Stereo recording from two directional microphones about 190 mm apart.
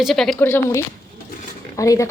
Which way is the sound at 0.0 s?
Centre (ahead or behind).